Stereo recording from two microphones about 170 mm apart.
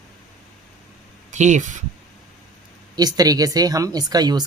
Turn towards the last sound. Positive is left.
turn(degrees=-25)  # may be behind; listen again after turning